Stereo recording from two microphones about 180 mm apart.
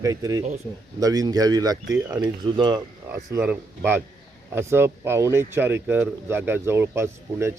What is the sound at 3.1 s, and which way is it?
Speech, 15° right (ahead or behind).